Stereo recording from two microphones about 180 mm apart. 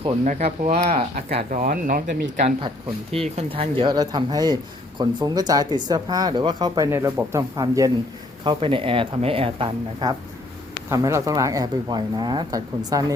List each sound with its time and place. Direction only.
0.3 s speech: 40° right (ahead or behind)
3.1 s speech: 35° right (ahead or behind)
10.8 s speech: 15° right (ahead or behind)